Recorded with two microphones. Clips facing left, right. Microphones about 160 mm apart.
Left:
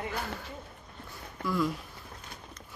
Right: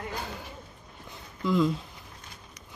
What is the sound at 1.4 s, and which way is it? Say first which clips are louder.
Speech: right 5 dB; 20° right (ahead or behind).